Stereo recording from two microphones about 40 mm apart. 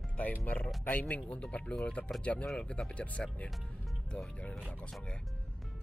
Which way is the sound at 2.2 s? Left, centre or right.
Left.